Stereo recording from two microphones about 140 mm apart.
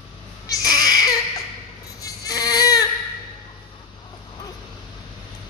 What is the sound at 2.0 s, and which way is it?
Baby cry, 25° left (ahead or behind).